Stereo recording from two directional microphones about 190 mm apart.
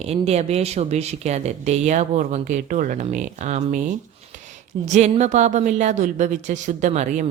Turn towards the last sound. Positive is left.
turn(degrees=-40)  # may be behind; listen again after turning